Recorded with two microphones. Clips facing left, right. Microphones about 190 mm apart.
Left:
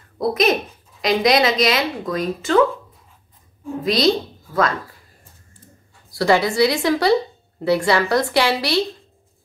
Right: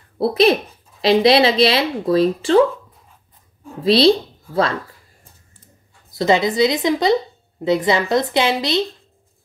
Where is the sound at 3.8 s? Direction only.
30° right (ahead or behind).